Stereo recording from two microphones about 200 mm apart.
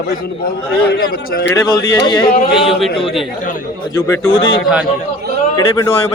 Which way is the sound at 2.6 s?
Centre (ahead or behind).